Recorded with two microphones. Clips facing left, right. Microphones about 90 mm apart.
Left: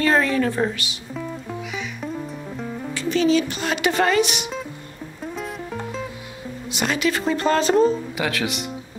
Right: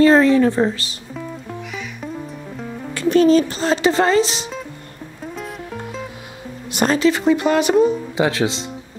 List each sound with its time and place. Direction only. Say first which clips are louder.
0.0 s a woman's voice: right 7 dB; 25° right (ahead or behind)
2.9 s speech: right 6 dB; 50° right (ahead or behind); by 4.5 s 30° right (ahead or behind)
5.2 s music: even; centre (ahead or behind)
6.7 s speech: right 7 dB; 45° right (ahead or behind)
7.0 s speech: right 6 dB; 20° right (ahead or behind)
8.2 s a woman's voice: right 6 dB; 25° right (ahead or behind)